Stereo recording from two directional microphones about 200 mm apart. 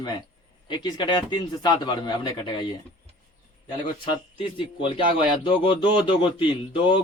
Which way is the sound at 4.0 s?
25° left (ahead or behind).